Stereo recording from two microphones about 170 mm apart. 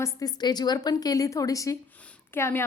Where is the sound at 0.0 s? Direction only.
20° left (ahead or behind).